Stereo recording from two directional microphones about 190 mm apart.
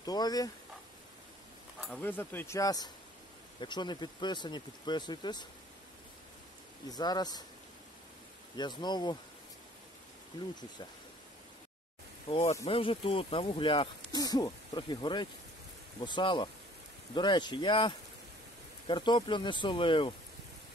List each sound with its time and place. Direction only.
0.0 s speech: 20° left (ahead or behind)
1.8 s speech: 5° left (ahead or behind); by 5.5 s 25° left (ahead or behind)
6.9 s speech: 20° left (ahead or behind)
8.5 s speech: 20° left (ahead or behind)
12.3 s speech: 35° left (ahead or behind)